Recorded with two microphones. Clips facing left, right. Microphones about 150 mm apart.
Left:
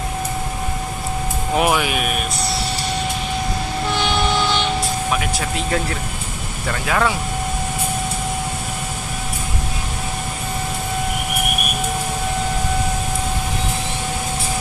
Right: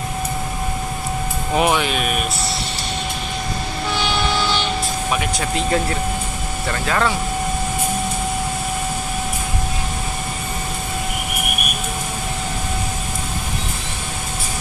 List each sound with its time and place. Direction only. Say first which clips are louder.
1.6 s speech: even; 5° left (ahead or behind)
4.4 s vehicle: left 1 dB; 20° left (ahead or behind)
6.9 s speech: left 1 dB; 5° left (ahead or behind)